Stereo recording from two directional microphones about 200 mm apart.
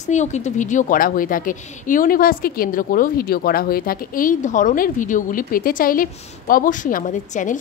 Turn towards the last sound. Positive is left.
turn(degrees=40)  # may be behind; listen again after turning